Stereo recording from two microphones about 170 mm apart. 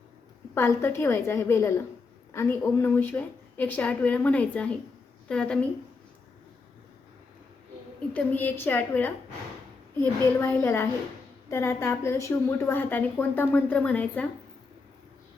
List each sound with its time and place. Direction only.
0.5 s a woman's voice: 15° left (ahead or behind)
8.1 s a woman's voice: 10° left (ahead or behind)